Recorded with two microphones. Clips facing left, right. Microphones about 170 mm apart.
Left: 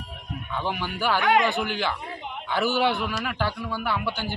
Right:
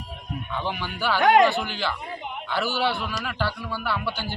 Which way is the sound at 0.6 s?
10° left (ahead or behind).